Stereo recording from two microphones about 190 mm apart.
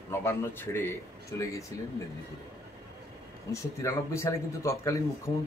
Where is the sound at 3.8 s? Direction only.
15° left (ahead or behind).